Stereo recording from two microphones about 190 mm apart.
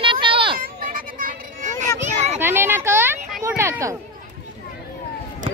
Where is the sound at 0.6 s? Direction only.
45° right (ahead or behind).